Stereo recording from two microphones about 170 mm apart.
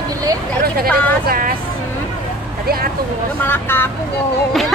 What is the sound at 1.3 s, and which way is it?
Vehicle, 55° right (ahead or behind).